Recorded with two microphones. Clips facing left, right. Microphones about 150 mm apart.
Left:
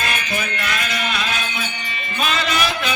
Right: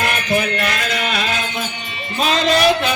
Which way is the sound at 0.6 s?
50° right (ahead or behind).